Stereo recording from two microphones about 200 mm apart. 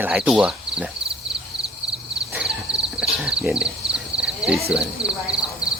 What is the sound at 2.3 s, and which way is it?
Horse, 5° right (ahead or behind).